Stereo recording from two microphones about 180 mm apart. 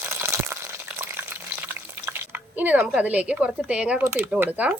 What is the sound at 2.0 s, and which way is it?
Speech, 10° right (ahead or behind).